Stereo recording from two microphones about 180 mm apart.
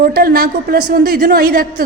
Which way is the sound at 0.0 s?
55° right (ahead or behind).